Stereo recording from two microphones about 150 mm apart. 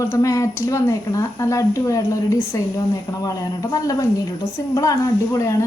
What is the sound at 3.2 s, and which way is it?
A woman's voice, 25° left (ahead or behind).